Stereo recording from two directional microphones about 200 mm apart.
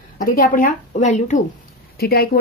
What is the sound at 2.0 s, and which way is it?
Speech, 50° left (ahead or behind).